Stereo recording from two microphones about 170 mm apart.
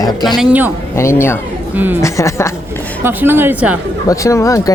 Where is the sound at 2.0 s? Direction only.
15° left (ahead or behind).